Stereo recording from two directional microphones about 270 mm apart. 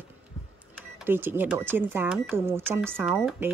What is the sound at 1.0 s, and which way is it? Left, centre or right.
Speech, centre.